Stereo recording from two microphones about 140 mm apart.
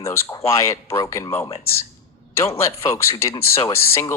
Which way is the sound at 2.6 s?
20° left (ahead or behind).